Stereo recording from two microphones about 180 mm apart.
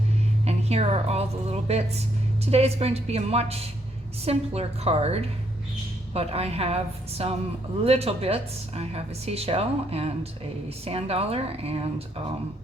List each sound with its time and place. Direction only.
0.4 s a woman's voice: 35° right (ahead or behind)